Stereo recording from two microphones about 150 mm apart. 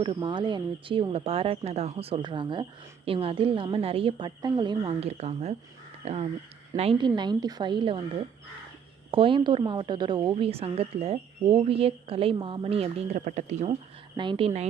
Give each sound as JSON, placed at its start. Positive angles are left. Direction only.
{"t": 0.0, "sound": "speech", "side_deg": -35}
{"t": 4.9, "sound": "speech", "side_deg": -45}
{"t": 6.7, "sound": "speech", "side_deg": -35}
{"t": 9.0, "sound": "speech", "side_deg": -35}
{"t": 10.3, "sound": "speech", "side_deg": -40}
{"t": 14.2, "sound": "speech", "side_deg": -35}